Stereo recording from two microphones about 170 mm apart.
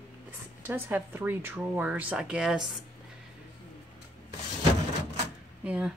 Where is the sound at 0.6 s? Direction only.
10° right (ahead or behind).